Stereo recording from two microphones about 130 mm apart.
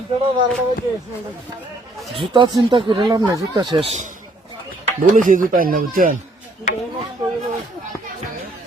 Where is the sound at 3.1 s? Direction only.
25° right (ahead or behind).